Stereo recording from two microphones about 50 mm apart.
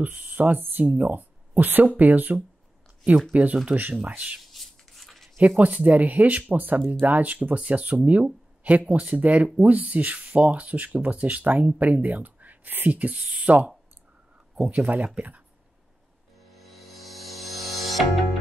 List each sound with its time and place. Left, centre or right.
0.0 s speech: right
3.6 s speech: right
4.5 s a sound: centre
5.6 s speech: right
12.9 s speech: right
14.7 s speech: right
16.3 s music: centre